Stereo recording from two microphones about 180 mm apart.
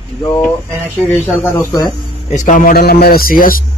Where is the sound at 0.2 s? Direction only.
10° left (ahead or behind).